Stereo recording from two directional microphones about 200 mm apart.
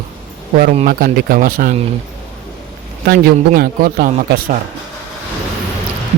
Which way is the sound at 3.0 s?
50° right (ahead or behind).